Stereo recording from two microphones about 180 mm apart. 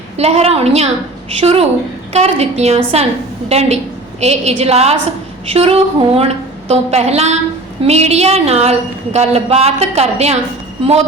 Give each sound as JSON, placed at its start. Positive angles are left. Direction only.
{"t": 0.2, "sound": "a woman's voice", "side_deg": -35}